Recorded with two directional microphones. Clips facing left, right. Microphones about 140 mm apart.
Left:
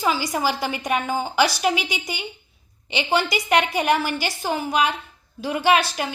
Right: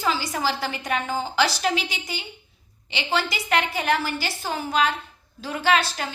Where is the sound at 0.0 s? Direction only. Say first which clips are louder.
Left 3 dB; 15° left (ahead or behind).